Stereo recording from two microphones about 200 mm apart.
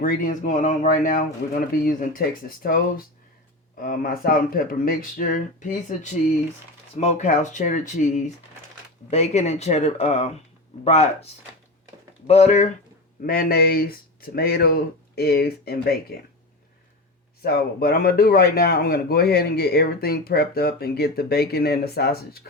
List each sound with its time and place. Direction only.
0.0 s speech: 45° left (ahead or behind)
12.3 s speech: 35° left (ahead or behind)
13.2 s speech: 45° left (ahead or behind)
17.4 s speech: 50° left (ahead or behind)